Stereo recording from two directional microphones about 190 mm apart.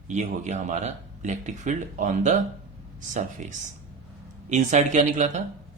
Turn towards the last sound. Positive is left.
turn(degrees=-40)  # may be behind; listen again after turning